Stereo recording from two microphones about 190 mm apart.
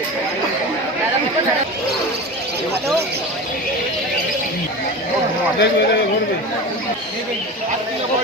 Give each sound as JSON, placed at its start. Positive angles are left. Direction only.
{"t": 5.5, "sound": "speech", "side_deg": 60}